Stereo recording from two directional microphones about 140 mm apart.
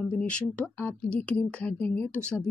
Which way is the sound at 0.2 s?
10° left (ahead or behind).